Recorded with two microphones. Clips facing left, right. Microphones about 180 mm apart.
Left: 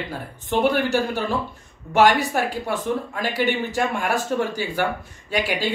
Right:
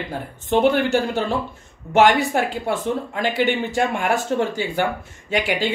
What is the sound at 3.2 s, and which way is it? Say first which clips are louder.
Speech: right 3 dB; 20° right (ahead or behind).